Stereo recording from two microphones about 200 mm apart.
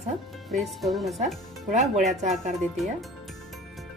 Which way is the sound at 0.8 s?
Centre (ahead or behind).